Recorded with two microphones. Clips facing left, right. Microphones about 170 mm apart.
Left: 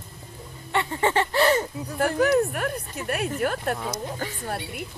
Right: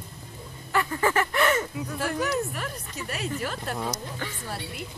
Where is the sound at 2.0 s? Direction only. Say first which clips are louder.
Left 8 dB; 55° left (ahead or behind).